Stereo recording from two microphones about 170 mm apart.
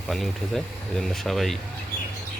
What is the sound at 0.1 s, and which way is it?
Speech, centre (ahead or behind).